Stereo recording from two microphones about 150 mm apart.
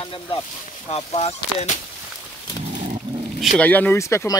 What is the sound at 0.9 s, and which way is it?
Speech, 45° left (ahead or behind).